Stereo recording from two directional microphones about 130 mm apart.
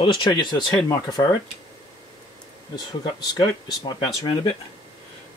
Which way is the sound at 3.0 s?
30° left (ahead or behind).